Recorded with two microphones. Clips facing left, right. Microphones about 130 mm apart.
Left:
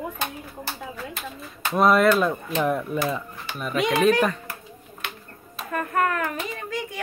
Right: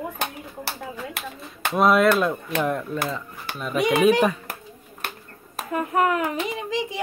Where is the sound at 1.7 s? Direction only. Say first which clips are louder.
Even; centre (ahead or behind).